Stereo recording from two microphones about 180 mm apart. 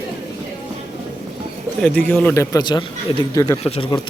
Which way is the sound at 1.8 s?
5° left (ahead or behind).